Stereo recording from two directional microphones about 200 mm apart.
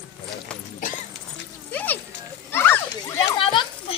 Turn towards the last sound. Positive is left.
turn(degrees=25)  # may be behind; listen again after turning